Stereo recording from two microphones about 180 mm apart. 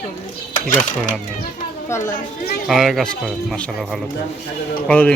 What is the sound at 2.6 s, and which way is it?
Speech, centre (ahead or behind).